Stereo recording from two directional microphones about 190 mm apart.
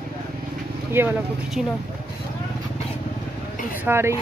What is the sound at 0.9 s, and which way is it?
Speech, 10° right (ahead or behind).